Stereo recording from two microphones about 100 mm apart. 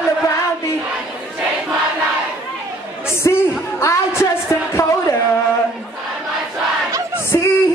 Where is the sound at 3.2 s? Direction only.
30° left (ahead or behind).